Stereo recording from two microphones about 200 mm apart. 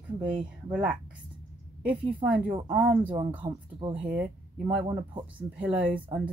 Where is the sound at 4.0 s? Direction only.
5° right (ahead or behind).